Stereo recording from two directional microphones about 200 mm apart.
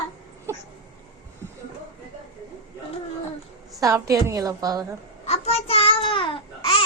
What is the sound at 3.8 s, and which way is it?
A woman's voice, 15° right (ahead or behind).